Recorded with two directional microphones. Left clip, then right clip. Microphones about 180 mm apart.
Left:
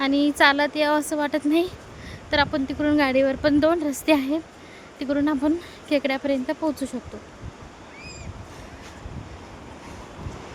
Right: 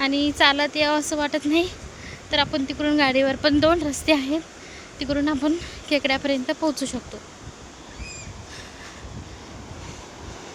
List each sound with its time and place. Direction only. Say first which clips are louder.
0.0 s speech: left 1 dB; 25° left (ahead or behind)